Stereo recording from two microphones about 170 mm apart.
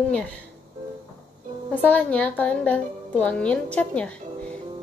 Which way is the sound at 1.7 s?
10° left (ahead or behind).